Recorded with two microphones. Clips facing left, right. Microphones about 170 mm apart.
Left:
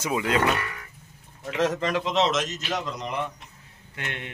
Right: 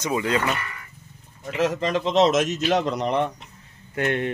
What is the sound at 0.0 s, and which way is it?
Speech, 5° left (ahead or behind).